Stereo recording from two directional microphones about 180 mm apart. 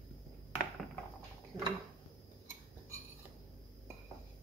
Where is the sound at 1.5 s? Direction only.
15° right (ahead or behind).